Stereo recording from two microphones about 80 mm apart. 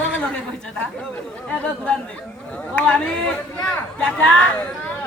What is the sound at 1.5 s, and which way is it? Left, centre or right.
Speech, centre.